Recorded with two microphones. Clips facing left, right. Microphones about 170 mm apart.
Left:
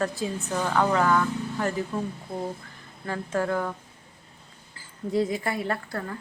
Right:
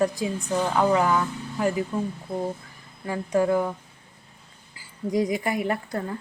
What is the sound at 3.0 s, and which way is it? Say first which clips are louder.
Speech: right 5 dB; 15° right (ahead or behind).